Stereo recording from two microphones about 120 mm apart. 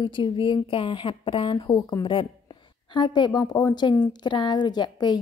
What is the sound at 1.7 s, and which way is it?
Speech, 30° left (ahead or behind).